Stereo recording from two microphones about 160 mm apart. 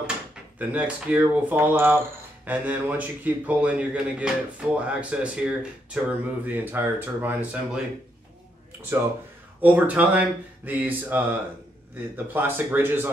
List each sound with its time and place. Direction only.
0.6 s a man's voice: 10° right (ahead or behind)
9.6 s a man's voice: 10° right (ahead or behind)